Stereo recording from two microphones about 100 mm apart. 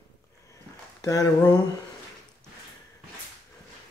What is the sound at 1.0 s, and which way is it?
Speech, 35° left (ahead or behind).